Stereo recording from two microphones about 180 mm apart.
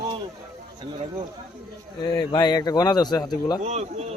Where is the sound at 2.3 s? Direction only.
20° left (ahead or behind).